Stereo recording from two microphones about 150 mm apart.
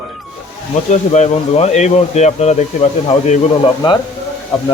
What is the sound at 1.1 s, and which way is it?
Speech, 50° left (ahead or behind).